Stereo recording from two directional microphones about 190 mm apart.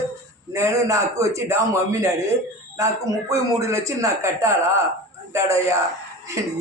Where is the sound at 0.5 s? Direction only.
15° right (ahead or behind).